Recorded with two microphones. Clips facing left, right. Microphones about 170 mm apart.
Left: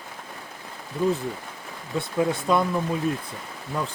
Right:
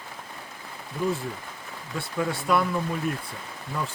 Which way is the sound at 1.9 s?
20° left (ahead or behind).